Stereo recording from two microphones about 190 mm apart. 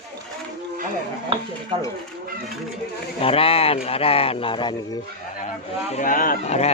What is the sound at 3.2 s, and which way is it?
Speech, 30° left (ahead or behind).